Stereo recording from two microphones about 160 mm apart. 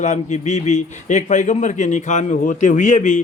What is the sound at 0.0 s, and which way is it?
Speech, 45° left (ahead or behind).